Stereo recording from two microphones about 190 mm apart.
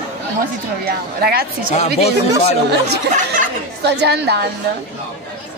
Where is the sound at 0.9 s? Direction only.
55° right (ahead or behind).